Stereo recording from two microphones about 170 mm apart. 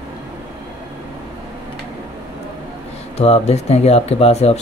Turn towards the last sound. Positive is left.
turn(degrees=40)  # may be behind; listen again after turning